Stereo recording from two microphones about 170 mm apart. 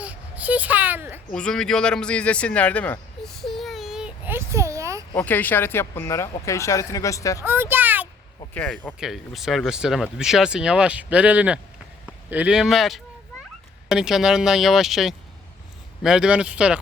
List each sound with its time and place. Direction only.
0.0 s baby cry: 10° right (ahead or behind)
1.3 s a sound: 5° left (ahead or behind); by 5.0 s 15° right (ahead or behind)
5.1 s speech: 10° left (ahead or behind)
7.4 s a child's voice: 15° right (ahead or behind)
8.5 s speech: 5° left (ahead or behind)